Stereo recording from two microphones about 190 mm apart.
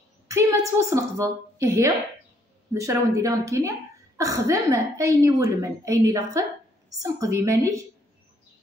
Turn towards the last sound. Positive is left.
turn(degrees=-15)  # may be behind; listen again after turning